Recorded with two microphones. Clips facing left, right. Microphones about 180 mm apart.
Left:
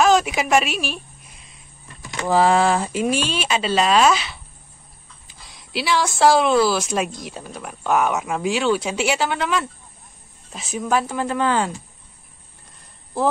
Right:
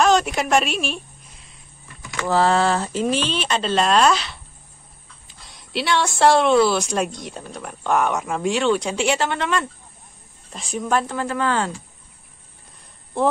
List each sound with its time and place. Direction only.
0.0 s a sound: centre (ahead or behind)
2.2 s a woman's voice: 15° left (ahead or behind)
11.1 s speech: 15° left (ahead or behind)